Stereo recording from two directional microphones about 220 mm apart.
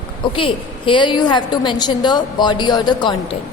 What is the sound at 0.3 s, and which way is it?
A woman's voice, 25° left (ahead or behind).